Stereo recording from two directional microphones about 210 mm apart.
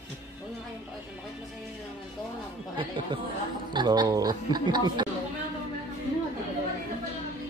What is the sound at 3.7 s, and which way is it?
Speech, 20° right (ahead or behind).